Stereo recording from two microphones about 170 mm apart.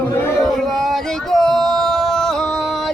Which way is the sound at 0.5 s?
Centre (ahead or behind).